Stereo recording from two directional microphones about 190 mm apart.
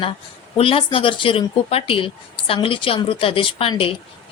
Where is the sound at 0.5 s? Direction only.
30° left (ahead or behind).